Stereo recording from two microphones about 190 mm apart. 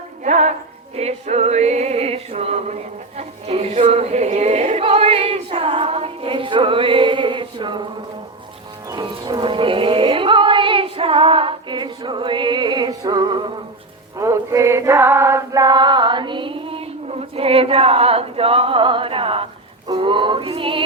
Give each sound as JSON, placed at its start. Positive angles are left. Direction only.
{"t": 0.3, "sound": "music", "side_deg": -40}
{"t": 3.2, "sound": "choir", "side_deg": -30}
{"t": 8.9, "sound": "music", "side_deg": -20}
{"t": 14.2, "sound": "chant", "side_deg": -15}
{"t": 19.9, "sound": "female singing", "side_deg": -25}